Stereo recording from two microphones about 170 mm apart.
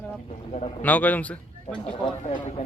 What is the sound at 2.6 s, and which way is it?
Speech, 45° left (ahead or behind).